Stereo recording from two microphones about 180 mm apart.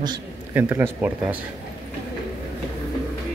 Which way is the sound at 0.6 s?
10° right (ahead or behind).